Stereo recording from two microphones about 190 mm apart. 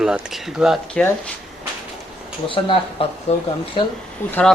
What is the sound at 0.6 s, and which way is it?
Speech, centre (ahead or behind).